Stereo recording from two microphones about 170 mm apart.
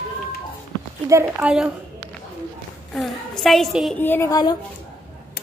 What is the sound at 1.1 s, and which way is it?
Speech, 10° right (ahead or behind).